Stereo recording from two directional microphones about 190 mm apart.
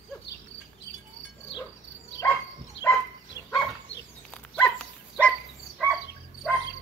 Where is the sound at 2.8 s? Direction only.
70° left (ahead or behind).